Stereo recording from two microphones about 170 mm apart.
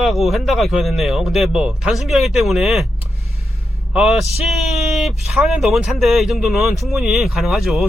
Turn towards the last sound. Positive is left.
turn(degrees=0)  # may be behind; listen again after turning